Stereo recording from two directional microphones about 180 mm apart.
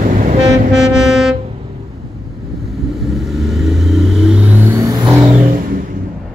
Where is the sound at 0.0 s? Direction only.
45° right (ahead or behind).